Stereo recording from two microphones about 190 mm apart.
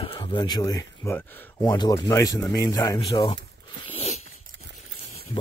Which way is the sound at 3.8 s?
30° left (ahead or behind).